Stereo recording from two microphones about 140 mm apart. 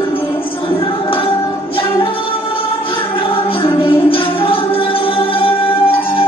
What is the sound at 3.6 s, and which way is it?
Music, 40° left (ahead or behind).